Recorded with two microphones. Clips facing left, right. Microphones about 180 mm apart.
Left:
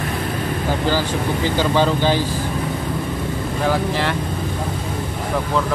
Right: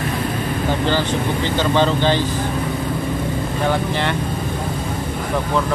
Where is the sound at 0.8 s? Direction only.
10° left (ahead or behind).